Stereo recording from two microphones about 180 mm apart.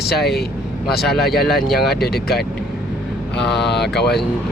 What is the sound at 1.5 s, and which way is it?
Speech, centre (ahead or behind).